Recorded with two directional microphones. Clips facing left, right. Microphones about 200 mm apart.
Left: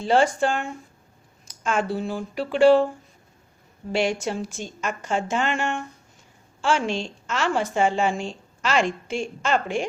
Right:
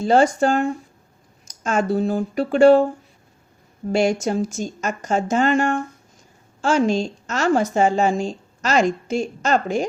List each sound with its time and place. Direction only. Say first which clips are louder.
0.0 s a woman's voice: right 4 dB; 40° right (ahead or behind)
3.9 s a woman's voice: right 5 dB; 40° right (ahead or behind)